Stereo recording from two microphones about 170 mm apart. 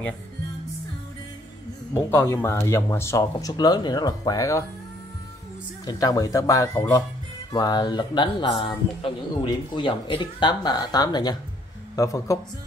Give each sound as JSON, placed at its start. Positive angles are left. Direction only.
{"t": 2.0, "sound": "speech", "side_deg": 15}
{"t": 5.9, "sound": "a man's voice", "side_deg": 20}